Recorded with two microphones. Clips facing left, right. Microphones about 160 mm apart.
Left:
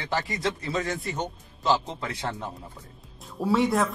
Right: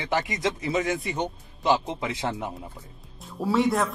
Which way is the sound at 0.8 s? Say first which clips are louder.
Right 3 dB; 5° right (ahead or behind).